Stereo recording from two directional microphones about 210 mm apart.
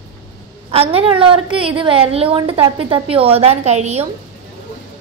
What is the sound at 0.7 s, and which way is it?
A woman's voice, 25° right (ahead or behind).